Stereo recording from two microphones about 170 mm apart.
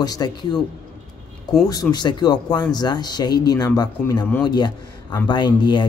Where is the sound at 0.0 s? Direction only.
25° left (ahead or behind).